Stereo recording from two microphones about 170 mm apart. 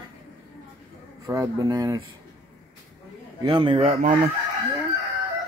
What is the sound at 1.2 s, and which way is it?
Speech, 20° right (ahead or behind).